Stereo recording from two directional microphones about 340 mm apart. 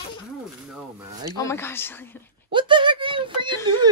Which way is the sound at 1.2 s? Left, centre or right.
Centre.